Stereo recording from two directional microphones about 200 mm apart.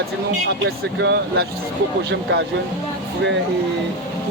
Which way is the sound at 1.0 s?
60° right (ahead or behind).